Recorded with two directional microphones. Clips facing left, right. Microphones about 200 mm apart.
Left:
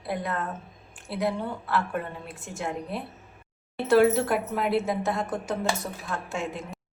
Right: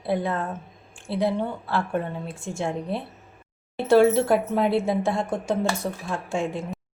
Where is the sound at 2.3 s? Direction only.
30° right (ahead or behind).